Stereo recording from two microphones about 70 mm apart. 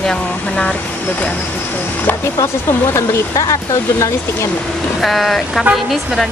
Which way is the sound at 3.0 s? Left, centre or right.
Left.